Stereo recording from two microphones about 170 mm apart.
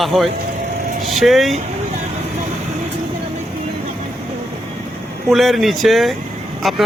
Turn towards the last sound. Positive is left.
turn(degrees=0)  # may be behind; listen again after turning